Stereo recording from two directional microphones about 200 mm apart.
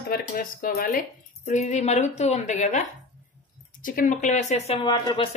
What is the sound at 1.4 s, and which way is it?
Speech, 35° left (ahead or behind).